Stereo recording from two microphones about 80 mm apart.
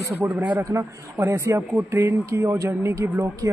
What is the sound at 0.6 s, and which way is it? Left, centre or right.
Speech, right.